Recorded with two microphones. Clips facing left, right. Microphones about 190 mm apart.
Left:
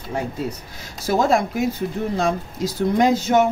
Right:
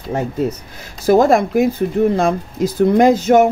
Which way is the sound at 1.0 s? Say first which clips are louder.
Right 7 dB; 55° right (ahead or behind).